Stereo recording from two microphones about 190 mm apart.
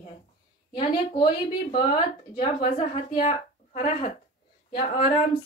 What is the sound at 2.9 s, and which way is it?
A woman's voice, 30° left (ahead or behind).